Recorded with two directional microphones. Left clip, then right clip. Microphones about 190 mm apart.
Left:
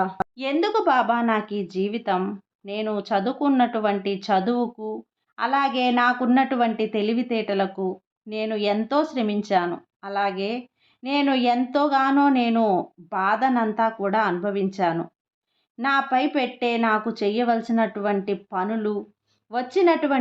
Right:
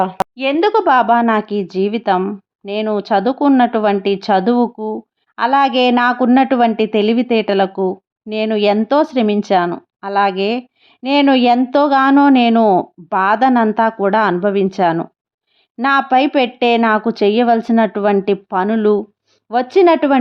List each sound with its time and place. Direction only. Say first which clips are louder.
0.0 s a woman's voice: right 9 dB; 30° right (ahead or behind)